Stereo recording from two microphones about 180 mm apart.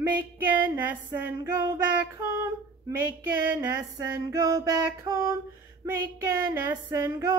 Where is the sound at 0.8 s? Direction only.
10° right (ahead or behind).